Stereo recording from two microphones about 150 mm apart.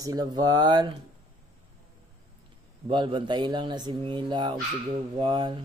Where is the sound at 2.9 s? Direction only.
30° right (ahead or behind).